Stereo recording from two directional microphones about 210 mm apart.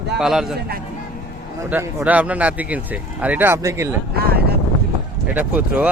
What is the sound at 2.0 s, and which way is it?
Speech, 5° right (ahead or behind).